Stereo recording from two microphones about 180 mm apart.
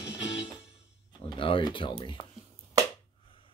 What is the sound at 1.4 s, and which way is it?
Speech, 30° left (ahead or behind).